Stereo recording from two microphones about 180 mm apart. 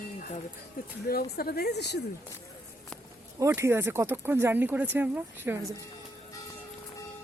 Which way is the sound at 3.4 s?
15° right (ahead or behind).